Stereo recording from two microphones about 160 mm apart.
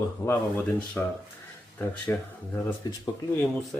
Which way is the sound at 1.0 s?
10° left (ahead or behind).